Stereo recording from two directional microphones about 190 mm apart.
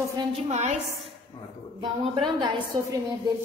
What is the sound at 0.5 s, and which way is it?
Speech, 40° right (ahead or behind).